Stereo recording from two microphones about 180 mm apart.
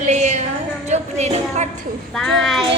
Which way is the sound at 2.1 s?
Centre (ahead or behind).